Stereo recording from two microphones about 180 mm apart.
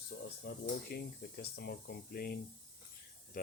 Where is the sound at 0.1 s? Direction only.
75° left (ahead or behind).